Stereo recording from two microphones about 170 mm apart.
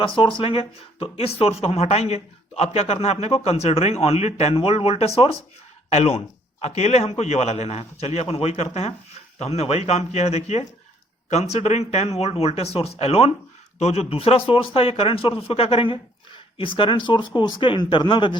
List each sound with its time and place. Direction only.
0.0 s speech: 30° left (ahead or behind)